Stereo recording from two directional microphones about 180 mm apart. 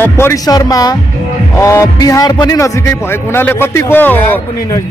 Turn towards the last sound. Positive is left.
turn(degrees=10)  # may be behind; listen again after turning